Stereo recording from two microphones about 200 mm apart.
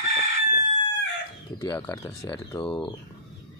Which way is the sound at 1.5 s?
15° left (ahead or behind).